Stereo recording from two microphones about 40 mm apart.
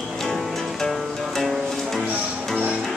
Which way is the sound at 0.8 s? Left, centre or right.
Centre.